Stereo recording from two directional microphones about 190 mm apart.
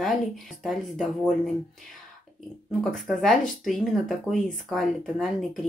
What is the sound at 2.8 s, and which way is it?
Speech, centre (ahead or behind).